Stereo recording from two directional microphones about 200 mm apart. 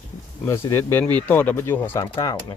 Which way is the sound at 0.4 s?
10° left (ahead or behind).